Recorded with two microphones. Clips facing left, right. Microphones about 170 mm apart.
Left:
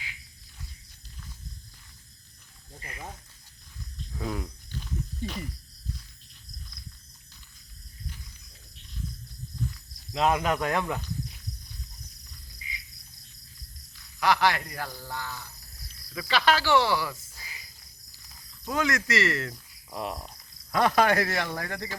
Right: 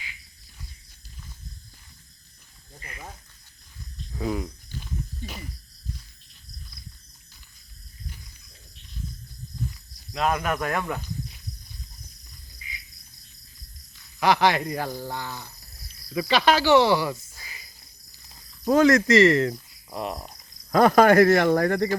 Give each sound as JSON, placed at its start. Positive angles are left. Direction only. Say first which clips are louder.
{"t": 4.1, "sound": "a sound", "louder": "right 5 dB", "side_deg": -5}
{"t": 10.1, "sound": "speech", "louder": "even", "side_deg": 20}
{"t": 14.2, "sound": "speech", "louder": "right 4 dB", "side_deg": -20}
{"t": 18.6, "sound": "speech", "louder": "right 11 dB", "side_deg": -40}
{"t": 19.2, "sound": "speech", "louder": "right 11 dB", "side_deg": -30}
{"t": 19.9, "sound": "speech", "louder": "right 3 dB", "side_deg": -5}
{"t": 20.7, "sound": "speech", "louder": "right 7 dB", "side_deg": -45}